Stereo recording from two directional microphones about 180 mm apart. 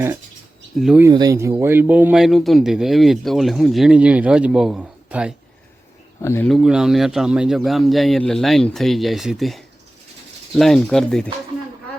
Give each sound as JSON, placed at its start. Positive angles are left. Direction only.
{"t": 0.8, "sound": "speech", "side_deg": 0}
{"t": 1.0, "sound": "speech", "side_deg": -20}
{"t": 6.2, "sound": "speech", "side_deg": 15}
{"t": 6.5, "sound": "speech", "side_deg": -5}